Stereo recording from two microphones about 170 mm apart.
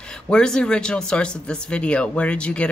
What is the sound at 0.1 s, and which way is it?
A woman's voice, 5° left (ahead or behind).